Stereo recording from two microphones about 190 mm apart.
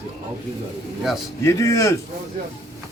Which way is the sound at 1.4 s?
15° left (ahead or behind).